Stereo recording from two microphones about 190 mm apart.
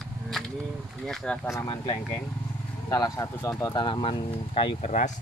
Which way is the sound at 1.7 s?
25° left (ahead or behind).